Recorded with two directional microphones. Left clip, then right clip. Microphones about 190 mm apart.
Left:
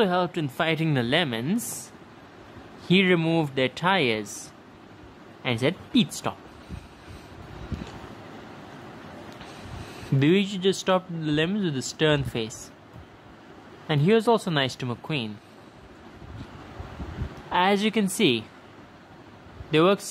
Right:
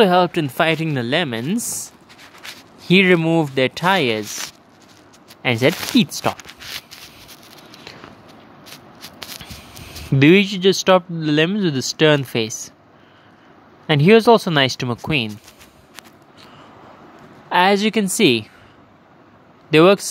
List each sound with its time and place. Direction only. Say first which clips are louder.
0.0 s speech: right 10 dB; 25° right (ahead or behind)
0.8 s speech: right 4 dB; 5° right (ahead or behind)
2.8 s speech: right 8 dB; 20° right (ahead or behind)
5.4 s speech: right 9 dB; 20° right (ahead or behind)
9.8 s speech: right 10 dB; 20° right (ahead or behind)
13.8 s speech: right 9 dB; 25° right (ahead or behind)
17.5 s speech: right 7 dB; 15° right (ahead or behind)
19.7 s speech: right 9 dB; 20° right (ahead or behind)